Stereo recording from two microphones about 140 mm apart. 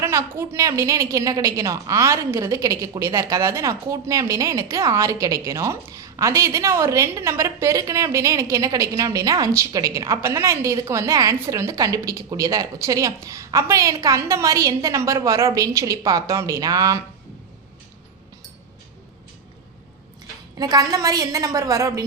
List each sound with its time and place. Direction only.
0.0 s a woman's voice: 20° right (ahead or behind)
20.6 s a woman's voice: 25° right (ahead or behind)